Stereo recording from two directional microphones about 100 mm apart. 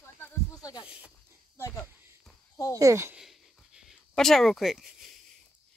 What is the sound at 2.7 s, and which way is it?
Speech, 30° right (ahead or behind).